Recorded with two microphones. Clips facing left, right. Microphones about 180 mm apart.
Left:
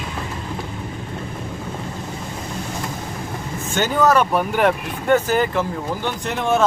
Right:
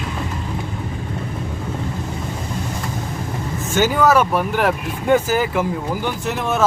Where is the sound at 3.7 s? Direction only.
5° right (ahead or behind).